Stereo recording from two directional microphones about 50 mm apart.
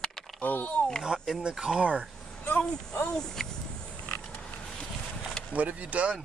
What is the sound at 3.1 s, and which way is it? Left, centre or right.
Speech, centre.